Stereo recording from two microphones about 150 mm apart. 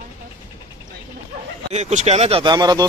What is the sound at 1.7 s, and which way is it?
Speech, 50° right (ahead or behind).